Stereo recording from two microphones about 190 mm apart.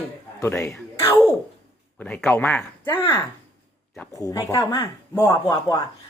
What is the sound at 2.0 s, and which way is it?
Speech, 5° left (ahead or behind).